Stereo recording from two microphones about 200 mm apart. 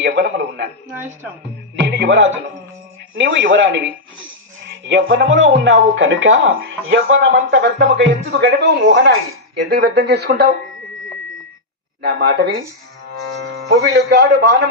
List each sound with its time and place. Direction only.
0.0 s a sound: 60° right (ahead or behind)
1.7 s speech: 60° right (ahead or behind)
4.9 s speech: 65° right (ahead or behind)
9.6 s speech: 55° right (ahead or behind)
12.0 s speech: 55° right (ahead or behind)